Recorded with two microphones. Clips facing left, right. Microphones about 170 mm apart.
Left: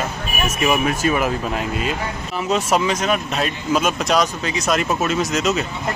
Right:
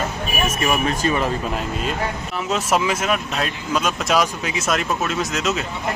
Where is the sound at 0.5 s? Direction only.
10° left (ahead or behind).